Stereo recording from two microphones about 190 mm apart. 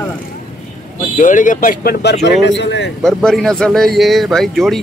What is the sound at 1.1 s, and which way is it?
Speech, 45° left (ahead or behind).